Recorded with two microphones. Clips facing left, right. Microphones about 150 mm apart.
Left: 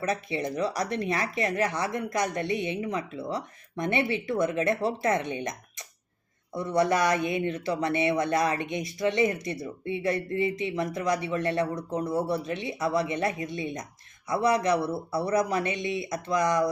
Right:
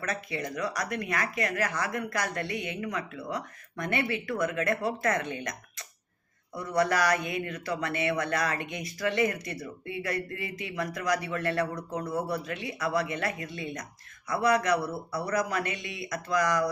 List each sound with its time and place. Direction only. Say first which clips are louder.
0.0 s speech: left 4 dB; 25° left (ahead or behind)